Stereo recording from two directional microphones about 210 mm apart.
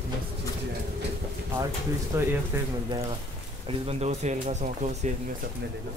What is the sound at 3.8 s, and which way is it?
Speech, 30° right (ahead or behind).